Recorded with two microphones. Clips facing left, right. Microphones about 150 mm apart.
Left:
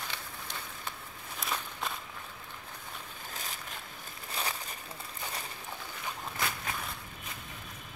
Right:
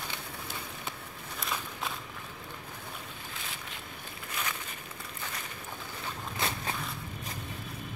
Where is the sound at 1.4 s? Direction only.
Centre (ahead or behind).